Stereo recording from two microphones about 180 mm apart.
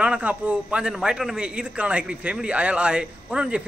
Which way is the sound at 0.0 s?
5° right (ahead or behind).